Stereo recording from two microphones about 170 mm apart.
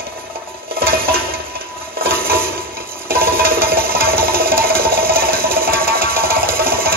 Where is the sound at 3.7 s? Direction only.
60° right (ahead or behind).